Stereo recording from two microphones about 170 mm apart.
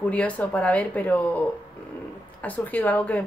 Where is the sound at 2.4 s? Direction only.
10° left (ahead or behind).